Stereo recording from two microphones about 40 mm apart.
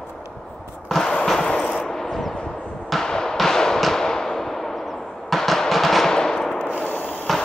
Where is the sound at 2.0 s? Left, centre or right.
Centre.